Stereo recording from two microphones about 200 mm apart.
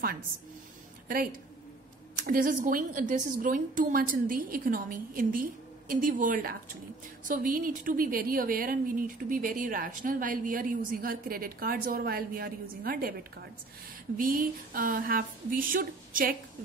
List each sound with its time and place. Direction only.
1.0 s a woman's voice: 45° right (ahead or behind)